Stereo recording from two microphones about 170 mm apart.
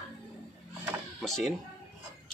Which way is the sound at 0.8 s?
Centre (ahead or behind).